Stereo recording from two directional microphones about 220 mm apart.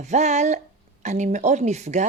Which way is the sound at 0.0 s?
30° right (ahead or behind).